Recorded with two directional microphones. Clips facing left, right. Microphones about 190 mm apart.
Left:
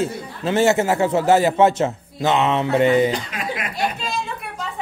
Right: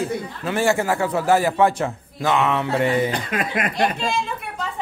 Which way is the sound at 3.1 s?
55° right (ahead or behind).